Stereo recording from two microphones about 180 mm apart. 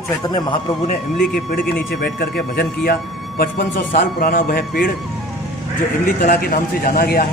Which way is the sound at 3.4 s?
50° left (ahead or behind).